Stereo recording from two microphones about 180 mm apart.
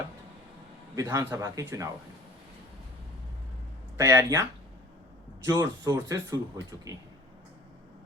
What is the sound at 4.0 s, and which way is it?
Speech, 15° right (ahead or behind).